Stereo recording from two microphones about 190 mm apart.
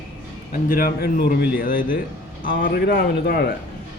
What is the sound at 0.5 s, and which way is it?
Speech, 45° left (ahead or behind).